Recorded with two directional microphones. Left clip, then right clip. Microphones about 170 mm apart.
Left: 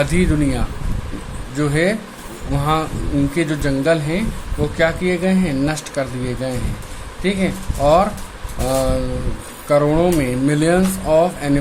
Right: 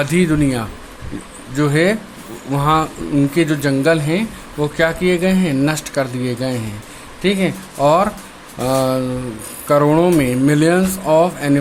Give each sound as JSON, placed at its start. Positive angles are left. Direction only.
{"t": 0.0, "sound": "speech", "side_deg": -25}